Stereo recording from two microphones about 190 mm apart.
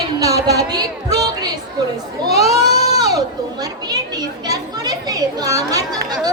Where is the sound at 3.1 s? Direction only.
20° right (ahead or behind).